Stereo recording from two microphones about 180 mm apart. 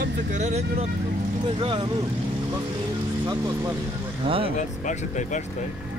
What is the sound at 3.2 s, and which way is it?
Speech, 20° right (ahead or behind).